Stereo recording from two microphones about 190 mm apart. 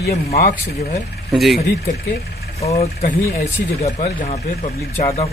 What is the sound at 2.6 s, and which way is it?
Speech, 35° left (ahead or behind).